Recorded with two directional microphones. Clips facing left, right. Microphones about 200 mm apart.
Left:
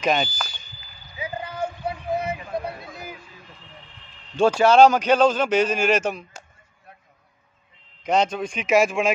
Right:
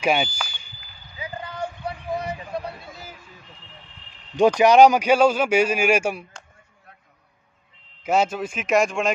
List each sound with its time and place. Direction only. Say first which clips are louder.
0.0 s a man's voice: right 1 dB; 10° right (ahead or behind)
1.1 s a sound: left 2 dB; 25° left (ahead or behind)
4.4 s a man's voice: right 1 dB; 15° right (ahead or behind)
8.0 s speech: even; 5° right (ahead or behind)